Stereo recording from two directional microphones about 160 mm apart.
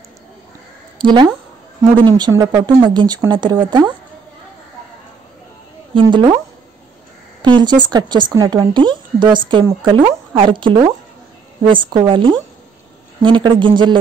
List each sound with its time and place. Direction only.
0.9 s a woman's voice: 30° right (ahead or behind)
5.9 s speech: 30° right (ahead or behind)
7.4 s speech: 30° right (ahead or behind)